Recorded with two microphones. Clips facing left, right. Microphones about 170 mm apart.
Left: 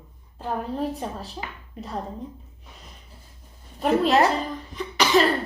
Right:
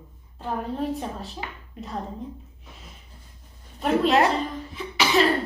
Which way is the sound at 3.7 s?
Centre (ahead or behind).